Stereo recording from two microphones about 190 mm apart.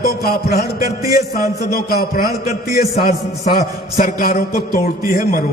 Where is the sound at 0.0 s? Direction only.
55° left (ahead or behind).